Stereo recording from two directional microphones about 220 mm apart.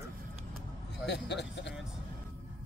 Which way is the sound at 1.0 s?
50° left (ahead or behind).